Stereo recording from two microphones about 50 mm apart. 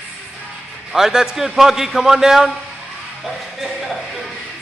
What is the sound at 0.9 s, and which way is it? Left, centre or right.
A man's voice, centre.